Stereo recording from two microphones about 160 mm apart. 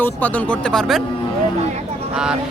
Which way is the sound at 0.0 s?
10° left (ahead or behind).